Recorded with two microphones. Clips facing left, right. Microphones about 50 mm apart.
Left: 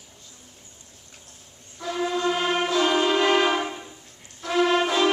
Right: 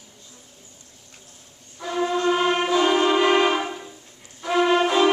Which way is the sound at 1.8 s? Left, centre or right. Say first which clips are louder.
Right 2 dB; centre.